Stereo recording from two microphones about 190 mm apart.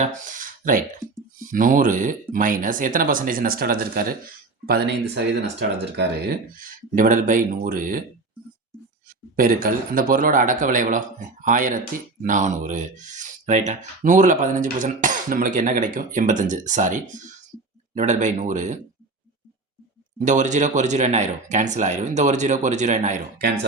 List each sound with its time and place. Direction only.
0.0 s speech: 40° right (ahead or behind); by 5.6 s 65° right (ahead or behind)
6.0 s speech: 50° right (ahead or behind)
9.3 s speech: 50° right (ahead or behind)
20.1 s speech: 40° right (ahead or behind)